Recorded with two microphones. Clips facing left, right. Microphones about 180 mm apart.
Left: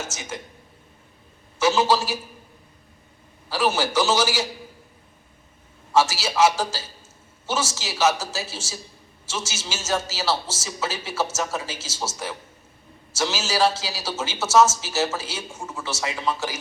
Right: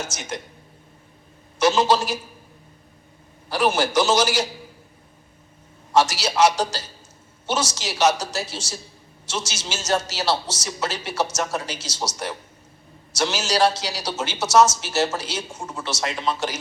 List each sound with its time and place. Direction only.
0.2 s a man's voice: 20° right (ahead or behind)
1.6 s a man's voice: 20° right (ahead or behind)
3.5 s a man's voice: 20° right (ahead or behind)
5.9 s a man's voice: 20° right (ahead or behind)